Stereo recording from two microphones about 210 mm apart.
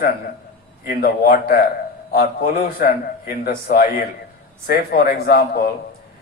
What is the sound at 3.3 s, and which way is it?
A man's voice, 45° left (ahead or behind).